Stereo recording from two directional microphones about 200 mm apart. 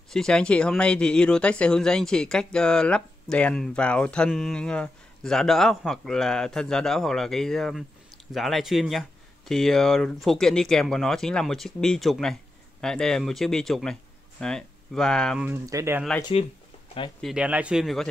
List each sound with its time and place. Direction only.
0.1 s speech: 5° left (ahead or behind)
15.4 s speech: 15° right (ahead or behind)
16.2 s speech: 25° left (ahead or behind)
17.2 s speech: 5° right (ahead or behind)